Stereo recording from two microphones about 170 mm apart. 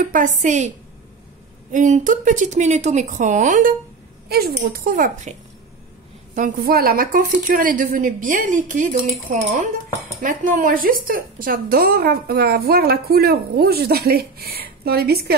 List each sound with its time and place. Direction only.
0.0 s a woman's voice: 50° right (ahead or behind)
4.3 s a woman's voice: 65° right (ahead or behind)
6.3 s a woman's voice: 55° right (ahead or behind)